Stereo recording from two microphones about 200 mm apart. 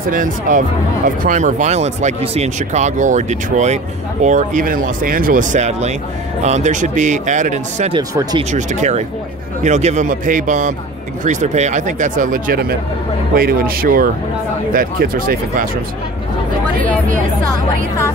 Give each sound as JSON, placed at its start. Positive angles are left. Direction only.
{"t": 0.1, "sound": "speech", "side_deg": -40}
{"t": 7.9, "sound": "speech", "side_deg": -20}
{"t": 8.5, "sound": "speech", "side_deg": -35}